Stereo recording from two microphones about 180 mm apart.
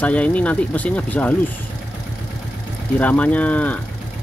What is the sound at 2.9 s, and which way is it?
Speech, 10° left (ahead or behind).